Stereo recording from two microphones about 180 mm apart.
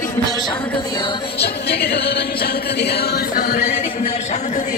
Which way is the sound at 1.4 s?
65° left (ahead or behind).